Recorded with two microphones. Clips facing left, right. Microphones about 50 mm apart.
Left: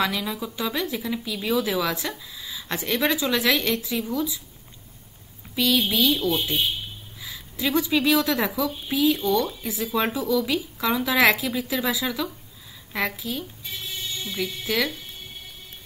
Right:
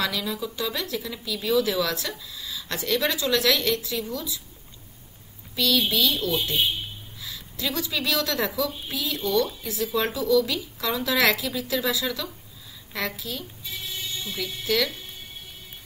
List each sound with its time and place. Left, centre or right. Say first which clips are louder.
0.0 s a woman's voice: left 2 dB; centre
5.6 s a woman's voice: left 1 dB; centre
7.2 s a woman's voice: left 3 dB; centre